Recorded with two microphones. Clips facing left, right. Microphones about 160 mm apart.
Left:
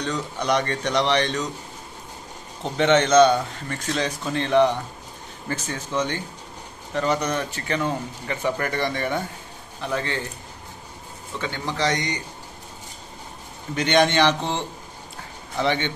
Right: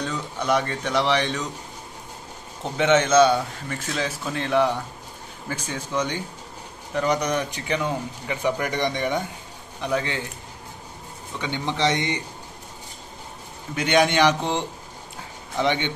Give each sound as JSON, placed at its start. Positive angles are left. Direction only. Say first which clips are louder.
{"t": 0.0, "sound": "a man's voice", "louder": "left 1 dB", "side_deg": -5}
{"t": 2.8, "sound": "a man's voice", "louder": "left 1 dB", "side_deg": -10}
{"t": 11.4, "sound": "a man's voice", "louder": "right 1 dB", "side_deg": -20}
{"t": 13.7, "sound": "a man's voice", "louder": "even", "side_deg": -10}
{"t": 15.6, "sound": "a man's voice", "louder": "even", "side_deg": -15}